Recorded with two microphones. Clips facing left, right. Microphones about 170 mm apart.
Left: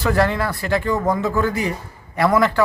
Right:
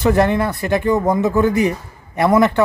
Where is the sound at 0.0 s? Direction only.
20° right (ahead or behind).